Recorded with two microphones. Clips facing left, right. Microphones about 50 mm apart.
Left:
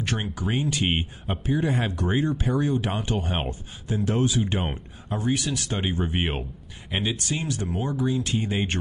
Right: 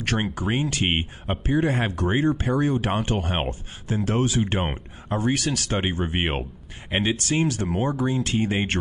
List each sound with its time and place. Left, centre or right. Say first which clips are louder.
0.0 s speech: right 3 dB; right
0.9 s speech: right 2 dB; right
1.4 s speech: right 2 dB; right
5.3 s speech: left 1 dB; right
5.7 s speech: even; right
7.2 s speech: right 6 dB; right
7.6 s speech: right 3 dB; right